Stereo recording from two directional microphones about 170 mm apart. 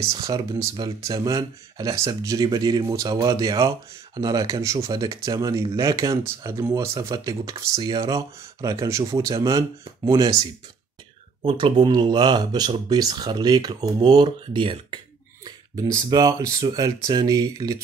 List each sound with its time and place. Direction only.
0.1 s speech: 25° right (ahead or behind)